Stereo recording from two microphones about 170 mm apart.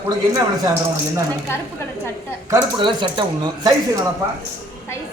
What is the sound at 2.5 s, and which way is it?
A man's voice, 25° right (ahead or behind).